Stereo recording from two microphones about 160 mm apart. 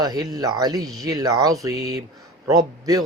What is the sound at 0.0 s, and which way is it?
Speech, 25° right (ahead or behind).